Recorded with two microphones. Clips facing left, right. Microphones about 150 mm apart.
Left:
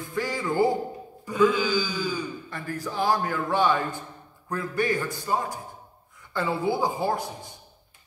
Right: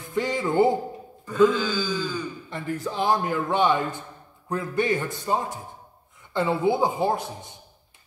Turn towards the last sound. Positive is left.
turn(degrees=-20)  # may be behind; listen again after turning